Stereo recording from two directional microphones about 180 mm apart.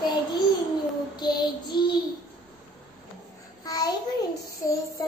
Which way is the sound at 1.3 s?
25° left (ahead or behind).